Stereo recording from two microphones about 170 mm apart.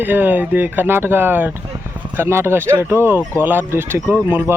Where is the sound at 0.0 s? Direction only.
10° right (ahead or behind).